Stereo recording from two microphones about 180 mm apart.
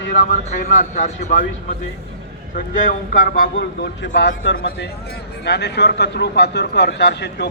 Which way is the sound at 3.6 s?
80° left.